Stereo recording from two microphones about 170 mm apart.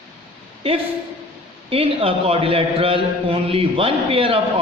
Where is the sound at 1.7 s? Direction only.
35° right (ahead or behind).